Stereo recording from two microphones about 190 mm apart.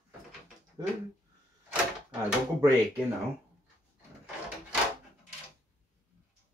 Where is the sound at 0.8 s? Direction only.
20° right (ahead or behind).